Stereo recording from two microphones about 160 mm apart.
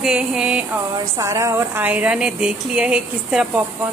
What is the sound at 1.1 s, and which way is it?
A woman's voice, 20° right (ahead or behind).